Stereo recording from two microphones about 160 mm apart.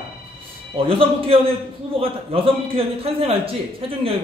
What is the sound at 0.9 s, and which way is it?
A man's voice, 35° right (ahead or behind).